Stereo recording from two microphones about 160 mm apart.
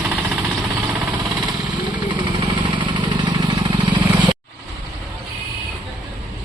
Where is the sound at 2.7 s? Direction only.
30° right (ahead or behind).